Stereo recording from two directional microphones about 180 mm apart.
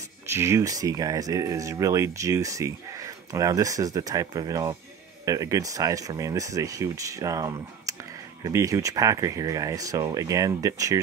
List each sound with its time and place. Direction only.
0.3 s speech: 15° right (ahead or behind)